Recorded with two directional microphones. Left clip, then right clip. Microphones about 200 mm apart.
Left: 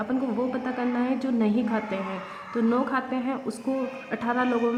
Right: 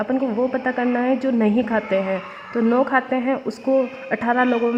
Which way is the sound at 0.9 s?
40° right (ahead or behind).